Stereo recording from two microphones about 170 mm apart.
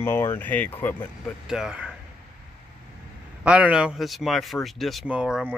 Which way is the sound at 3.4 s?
5° right (ahead or behind).